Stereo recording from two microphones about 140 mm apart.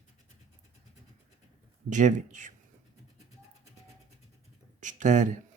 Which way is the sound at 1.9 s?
65° right (ahead or behind).